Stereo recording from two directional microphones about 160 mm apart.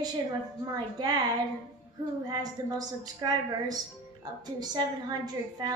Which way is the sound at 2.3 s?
25° right (ahead or behind).